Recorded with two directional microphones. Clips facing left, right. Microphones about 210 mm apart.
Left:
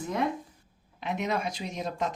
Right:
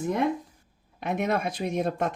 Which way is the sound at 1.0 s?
50° right (ahead or behind).